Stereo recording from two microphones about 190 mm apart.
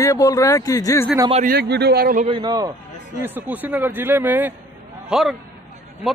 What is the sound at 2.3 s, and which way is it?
Speech, 25° right (ahead or behind).